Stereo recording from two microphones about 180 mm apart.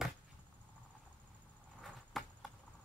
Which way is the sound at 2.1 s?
Centre (ahead or behind).